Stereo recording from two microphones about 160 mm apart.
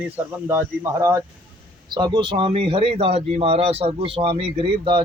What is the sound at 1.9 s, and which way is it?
A man's voice, 30° right (ahead or behind).